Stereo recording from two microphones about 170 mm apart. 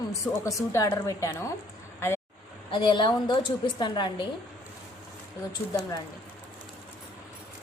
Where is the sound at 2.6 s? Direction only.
30° left (ahead or behind).